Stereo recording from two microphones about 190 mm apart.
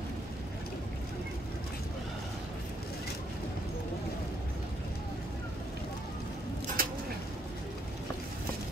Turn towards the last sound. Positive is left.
turn(degrees=-50)  # may be behind; listen again after turning